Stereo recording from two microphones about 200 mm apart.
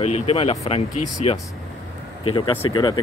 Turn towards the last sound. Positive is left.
turn(degrees=20)  # may be behind; listen again after turning